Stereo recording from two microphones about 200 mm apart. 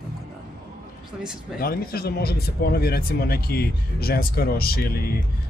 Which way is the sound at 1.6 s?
50° left (ahead or behind).